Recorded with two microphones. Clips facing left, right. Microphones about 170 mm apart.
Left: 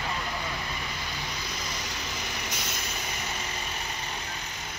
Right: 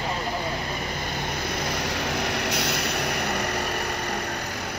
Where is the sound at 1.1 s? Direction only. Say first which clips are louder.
Right 8 dB; 55° right (ahead or behind).